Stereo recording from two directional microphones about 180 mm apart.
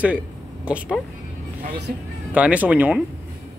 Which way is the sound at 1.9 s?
50° right (ahead or behind).